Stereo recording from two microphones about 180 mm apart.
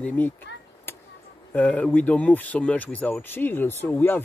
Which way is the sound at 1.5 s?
10° left (ahead or behind).